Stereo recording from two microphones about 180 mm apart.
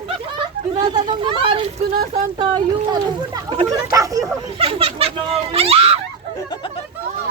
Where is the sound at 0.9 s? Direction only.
25° right (ahead or behind).